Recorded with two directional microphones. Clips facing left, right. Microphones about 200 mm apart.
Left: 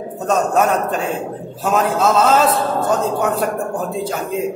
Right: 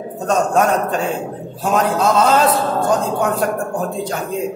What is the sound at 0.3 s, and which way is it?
A man's voice, 5° left (ahead or behind).